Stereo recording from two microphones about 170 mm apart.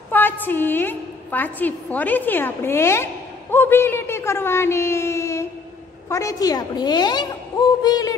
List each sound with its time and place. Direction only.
0.1 s a woman's voice: 10° left (ahead or behind)